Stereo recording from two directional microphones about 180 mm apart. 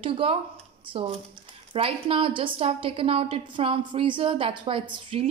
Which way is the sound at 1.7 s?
30° right (ahead or behind).